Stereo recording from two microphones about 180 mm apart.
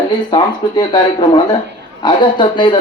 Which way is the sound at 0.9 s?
25° left (ahead or behind).